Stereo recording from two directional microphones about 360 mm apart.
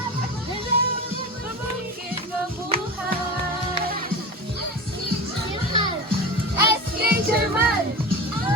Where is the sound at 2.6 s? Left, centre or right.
Centre.